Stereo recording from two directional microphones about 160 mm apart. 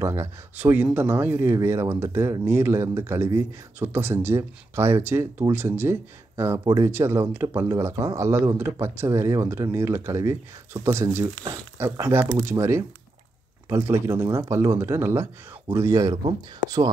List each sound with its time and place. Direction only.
0.0 s speech: 15° right (ahead or behind)